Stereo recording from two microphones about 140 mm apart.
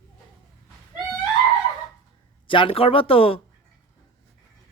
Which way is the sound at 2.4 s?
40° left (ahead or behind).